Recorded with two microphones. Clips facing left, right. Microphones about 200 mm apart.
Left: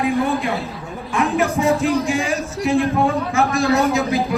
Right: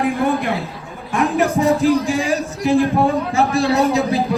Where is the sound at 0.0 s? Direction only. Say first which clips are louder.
Right 1 dB; 50° right (ahead or behind).